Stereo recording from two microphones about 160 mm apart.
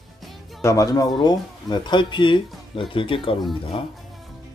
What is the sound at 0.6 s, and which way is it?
Speech, 20° left (ahead or behind).